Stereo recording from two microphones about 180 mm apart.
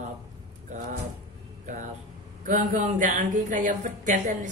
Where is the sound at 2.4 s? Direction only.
45° right (ahead or behind).